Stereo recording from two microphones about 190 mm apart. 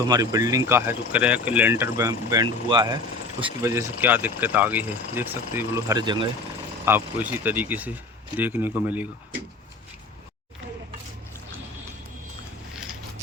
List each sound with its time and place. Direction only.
0.1 s speech: 20° right (ahead or behind)
6.8 s speech: 10° right (ahead or behind)